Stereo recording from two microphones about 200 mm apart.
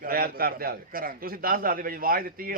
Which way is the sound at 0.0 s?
45° right (ahead or behind).